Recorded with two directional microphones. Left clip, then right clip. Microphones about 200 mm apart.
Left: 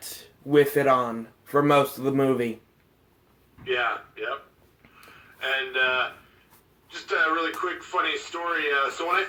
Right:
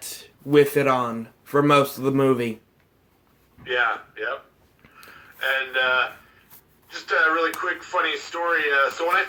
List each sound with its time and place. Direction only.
0.5 s a man's voice: 40° right (ahead or behind)
3.6 s a man's voice: centre (ahead or behind)
5.4 s speech: centre (ahead or behind)